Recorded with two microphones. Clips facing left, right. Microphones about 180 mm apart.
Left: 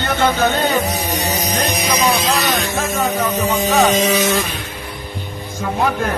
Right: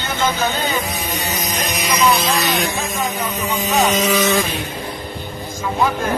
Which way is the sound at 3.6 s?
65° left (ahead or behind).